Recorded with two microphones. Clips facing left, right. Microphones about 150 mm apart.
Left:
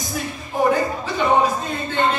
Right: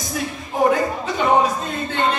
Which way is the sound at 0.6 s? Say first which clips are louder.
Right 1 dB; centre (ahead or behind).